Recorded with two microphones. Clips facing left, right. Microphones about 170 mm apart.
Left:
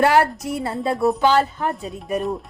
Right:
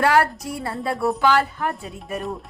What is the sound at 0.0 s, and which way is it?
Speech, 25° left (ahead or behind).